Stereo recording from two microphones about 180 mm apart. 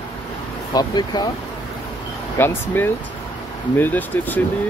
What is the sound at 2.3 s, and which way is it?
Speech, 10° left (ahead or behind).